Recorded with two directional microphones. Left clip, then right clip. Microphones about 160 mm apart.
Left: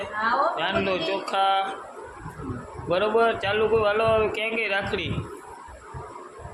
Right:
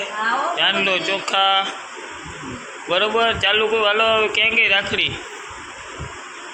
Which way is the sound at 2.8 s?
5° left (ahead or behind).